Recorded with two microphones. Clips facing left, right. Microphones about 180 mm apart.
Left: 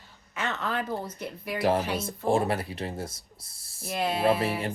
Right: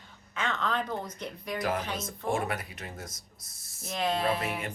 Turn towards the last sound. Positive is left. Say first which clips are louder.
# left 5 dB
turn(degrees=30)  # may be behind; listen again after turning